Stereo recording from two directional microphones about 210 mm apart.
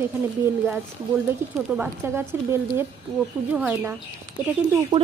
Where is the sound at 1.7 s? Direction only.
10° right (ahead or behind).